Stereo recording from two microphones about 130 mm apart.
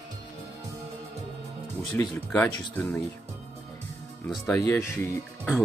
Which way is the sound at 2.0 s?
15° left (ahead or behind).